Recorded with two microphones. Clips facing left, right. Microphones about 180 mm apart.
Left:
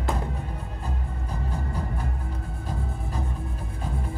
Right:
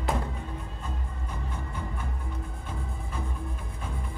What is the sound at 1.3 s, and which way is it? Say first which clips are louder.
Vehicle: left 6 dB; 35° left (ahead or behind).